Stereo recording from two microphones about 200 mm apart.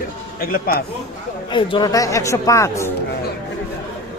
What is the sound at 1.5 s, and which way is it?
Speech, 20° left (ahead or behind).